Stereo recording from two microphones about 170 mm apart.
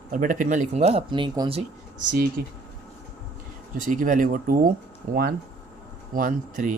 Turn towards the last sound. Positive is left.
turn(degrees=-50)  # may be behind; listen again after turning